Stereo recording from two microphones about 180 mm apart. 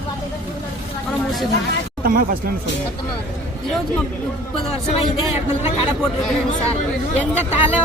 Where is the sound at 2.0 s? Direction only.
55° right (ahead or behind).